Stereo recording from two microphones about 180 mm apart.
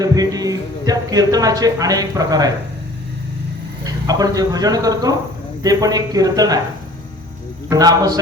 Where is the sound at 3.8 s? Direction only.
20° right (ahead or behind).